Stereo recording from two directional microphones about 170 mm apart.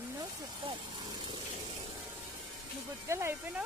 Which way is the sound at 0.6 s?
35° right (ahead or behind).